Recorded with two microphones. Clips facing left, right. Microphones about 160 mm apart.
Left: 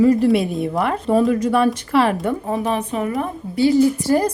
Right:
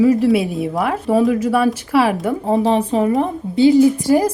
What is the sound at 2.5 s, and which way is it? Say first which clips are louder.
A woman's voice: right 6 dB; 30° right (ahead or behind).